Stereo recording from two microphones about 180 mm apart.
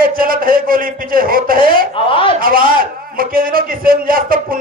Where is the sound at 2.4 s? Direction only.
50° right (ahead or behind).